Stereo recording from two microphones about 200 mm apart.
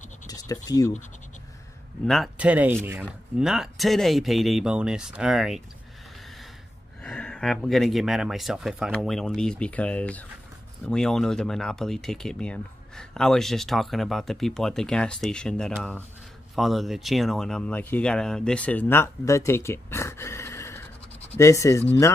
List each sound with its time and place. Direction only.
0.3 s scratch: 20° left (ahead or behind)
0.7 s speech: 15° left (ahead or behind)
2.0 s speech: centre (ahead or behind)
7.0 s speech: 5° left (ahead or behind)